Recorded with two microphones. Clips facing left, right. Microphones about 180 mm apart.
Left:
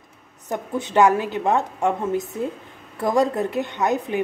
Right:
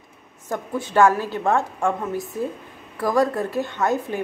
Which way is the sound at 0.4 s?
20° left (ahead or behind).